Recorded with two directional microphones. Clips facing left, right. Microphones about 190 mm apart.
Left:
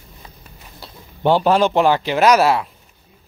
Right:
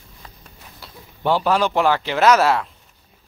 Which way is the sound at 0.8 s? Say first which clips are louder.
Left 5 dB; 25° left (ahead or behind).